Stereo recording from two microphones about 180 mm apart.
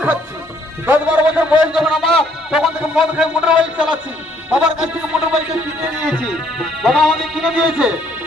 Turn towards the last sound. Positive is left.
turn(degrees=-5)  # may be behind; listen again after turning